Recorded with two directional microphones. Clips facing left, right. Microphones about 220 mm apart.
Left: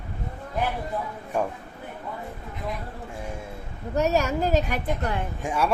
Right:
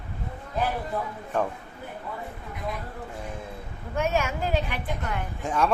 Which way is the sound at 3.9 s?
40° left (ahead or behind).